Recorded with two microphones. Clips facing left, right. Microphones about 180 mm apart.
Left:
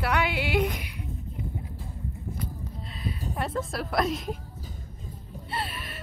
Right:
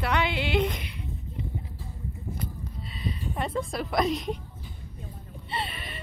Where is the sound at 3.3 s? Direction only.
Centre (ahead or behind).